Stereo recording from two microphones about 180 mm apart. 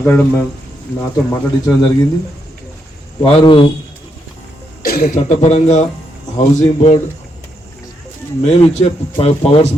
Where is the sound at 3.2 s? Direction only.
30° left (ahead or behind).